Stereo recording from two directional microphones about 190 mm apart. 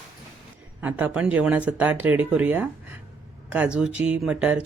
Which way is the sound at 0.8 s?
10° right (ahead or behind).